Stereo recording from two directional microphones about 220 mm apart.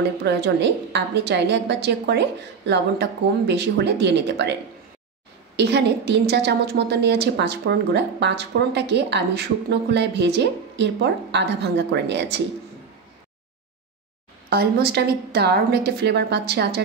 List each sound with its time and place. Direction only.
0.2 s a woman's voice: 50° right (ahead or behind)
5.6 s a woman's voice: 50° right (ahead or behind)
14.5 s a woman's voice: 45° right (ahead or behind)